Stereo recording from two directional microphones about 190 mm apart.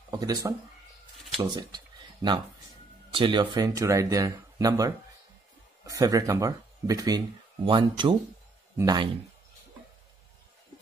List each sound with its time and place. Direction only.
0.1 s speech: 20° right (ahead or behind)
3.1 s speech: 25° right (ahead or behind)